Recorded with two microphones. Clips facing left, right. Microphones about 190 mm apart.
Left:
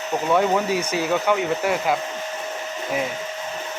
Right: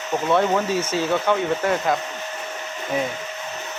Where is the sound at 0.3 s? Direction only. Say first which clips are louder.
Left 1 dB; 10° left (ahead or behind).